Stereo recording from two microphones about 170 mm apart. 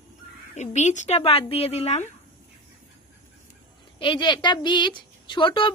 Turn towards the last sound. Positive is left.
turn(degrees=30)  # may be behind; listen again after turning